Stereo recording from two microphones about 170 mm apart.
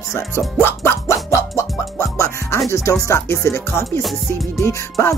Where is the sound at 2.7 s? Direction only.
15° left (ahead or behind).